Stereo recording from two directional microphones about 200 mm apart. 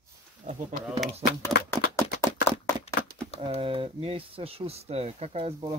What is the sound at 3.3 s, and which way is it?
Speech, 25° right (ahead or behind).